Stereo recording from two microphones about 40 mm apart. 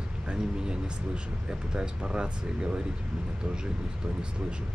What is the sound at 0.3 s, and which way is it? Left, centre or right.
Speech, right.